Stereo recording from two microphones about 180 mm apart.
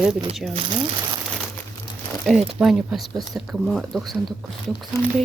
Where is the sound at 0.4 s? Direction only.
Centre (ahead or behind).